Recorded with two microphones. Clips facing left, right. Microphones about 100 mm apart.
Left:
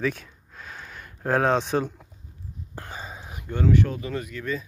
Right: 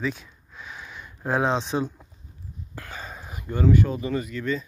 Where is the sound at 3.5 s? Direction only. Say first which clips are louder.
Right 1 dB; 5° right (ahead or behind).